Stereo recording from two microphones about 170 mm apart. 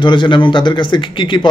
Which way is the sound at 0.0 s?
25° left (ahead or behind).